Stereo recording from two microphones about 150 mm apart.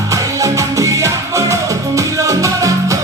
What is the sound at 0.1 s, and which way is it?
Music, 20° right (ahead or behind).